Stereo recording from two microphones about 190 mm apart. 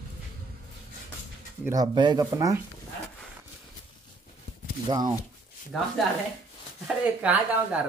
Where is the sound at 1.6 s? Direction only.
20° right (ahead or behind).